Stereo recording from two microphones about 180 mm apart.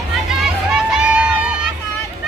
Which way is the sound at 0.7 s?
5° right (ahead or behind).